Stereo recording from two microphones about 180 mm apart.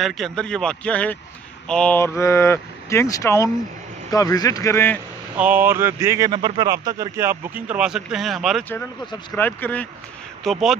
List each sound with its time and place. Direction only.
0.0 s a man's voice: centre (ahead or behind)
5.4 s a man's voice: 10° right (ahead or behind)